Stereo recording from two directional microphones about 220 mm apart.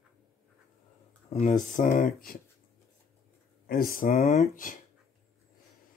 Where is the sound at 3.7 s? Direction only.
40° left (ahead or behind).